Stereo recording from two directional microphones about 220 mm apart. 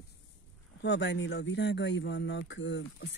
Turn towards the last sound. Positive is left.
turn(degrees=55)  # may be behind; listen again after turning